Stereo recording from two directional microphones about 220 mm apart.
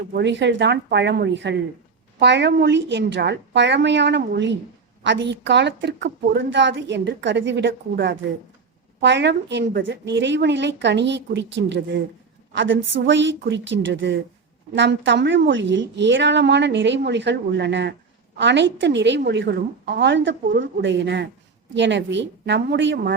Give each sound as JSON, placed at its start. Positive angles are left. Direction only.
{"t": 0.1, "sound": "a woman's voice", "side_deg": -50}